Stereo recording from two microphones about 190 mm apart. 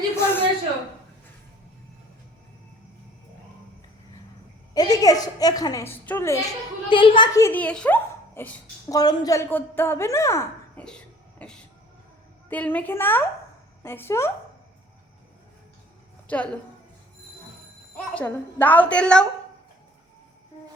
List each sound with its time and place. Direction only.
0.2 s a sound: 10° left (ahead or behind)
4.7 s a woman's voice: 20° left (ahead or behind)
6.9 s a child's voice: 25° left (ahead or behind)
10.8 s cough: 5° left (ahead or behind)
12.5 s a child's voice: 10° left (ahead or behind)
16.2 s a woman's voice: 5° left (ahead or behind)
17.9 s a child's voice: 10° left (ahead or behind)